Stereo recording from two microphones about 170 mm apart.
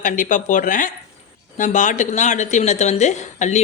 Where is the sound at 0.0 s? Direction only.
50° left (ahead or behind).